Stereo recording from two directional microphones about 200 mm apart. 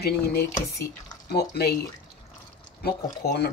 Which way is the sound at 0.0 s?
50° left (ahead or behind).